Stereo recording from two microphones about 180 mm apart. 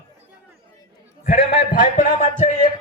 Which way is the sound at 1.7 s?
50° left (ahead or behind).